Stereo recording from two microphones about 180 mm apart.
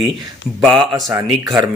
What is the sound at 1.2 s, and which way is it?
Speech, 20° right (ahead or behind).